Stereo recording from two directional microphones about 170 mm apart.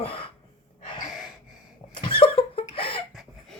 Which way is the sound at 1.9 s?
30° left (ahead or behind).